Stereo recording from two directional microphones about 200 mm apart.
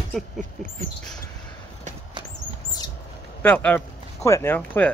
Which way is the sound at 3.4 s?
10° left (ahead or behind).